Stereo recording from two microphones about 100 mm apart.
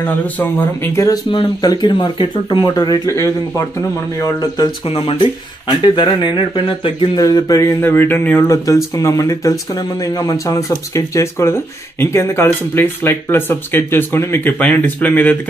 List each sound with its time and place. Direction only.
0.0 s speech: 20° left (ahead or behind)
0.9 s speech: 30° left (ahead or behind)
1.3 s speech: 55° left (ahead or behind)
2.7 s speech: 40° left (ahead or behind)
4.8 s speech: 70° left (ahead or behind)
7.2 s speech: 35° left (ahead or behind)
7.8 s speech: 20° left (ahead or behind)